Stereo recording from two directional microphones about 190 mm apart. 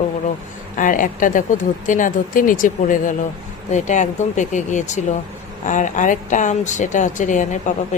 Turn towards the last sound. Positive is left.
turn(degrees=40)  # may be behind; listen again after turning